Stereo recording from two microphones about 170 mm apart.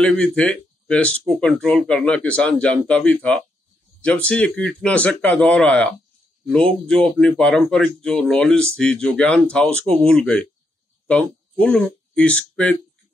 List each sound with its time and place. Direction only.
0.0 s speech: 5° left (ahead or behind)
11.6 s speech: 5° left (ahead or behind)